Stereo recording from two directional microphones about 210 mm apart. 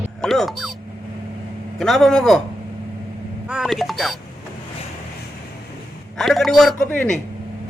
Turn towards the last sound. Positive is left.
turn(degrees=5)  # may be behind; listen again after turning